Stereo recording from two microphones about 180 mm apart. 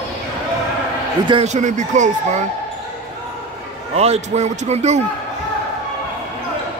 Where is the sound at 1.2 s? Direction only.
35° right (ahead or behind).